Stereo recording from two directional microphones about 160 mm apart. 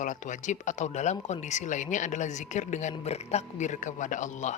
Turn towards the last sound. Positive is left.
turn(degrees=50)  # may be behind; listen again after turning